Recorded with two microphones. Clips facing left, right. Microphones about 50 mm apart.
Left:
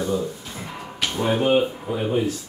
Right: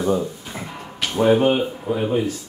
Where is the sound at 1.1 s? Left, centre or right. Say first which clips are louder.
Right 4 dB; centre.